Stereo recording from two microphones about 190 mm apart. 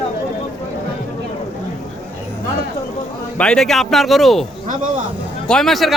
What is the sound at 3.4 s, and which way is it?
Speech, 5° left (ahead or behind).